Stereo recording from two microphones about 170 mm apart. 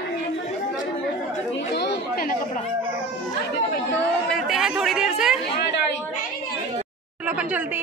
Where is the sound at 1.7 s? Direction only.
70° left (ahead or behind).